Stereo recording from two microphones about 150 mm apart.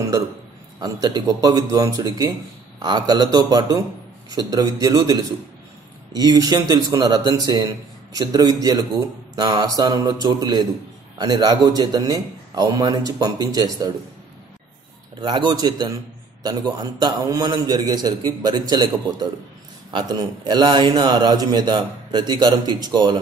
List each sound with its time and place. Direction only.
0.7 s a man's voice: 25° right (ahead or behind)
15.1 s a man's voice: 30° right (ahead or behind)